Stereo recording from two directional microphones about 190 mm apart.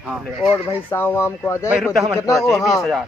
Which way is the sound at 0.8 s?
10° left (ahead or behind).